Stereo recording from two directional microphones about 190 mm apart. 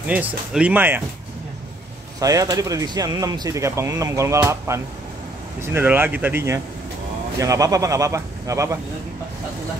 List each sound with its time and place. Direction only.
0.0 s speech: 10° right (ahead or behind)
2.1 s speech: 20° right (ahead or behind)